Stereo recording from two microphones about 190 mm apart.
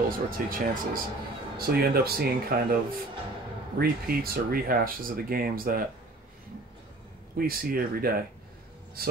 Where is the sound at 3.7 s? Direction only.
50° right (ahead or behind).